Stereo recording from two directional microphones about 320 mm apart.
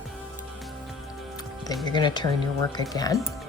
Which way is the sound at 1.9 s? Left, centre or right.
Centre.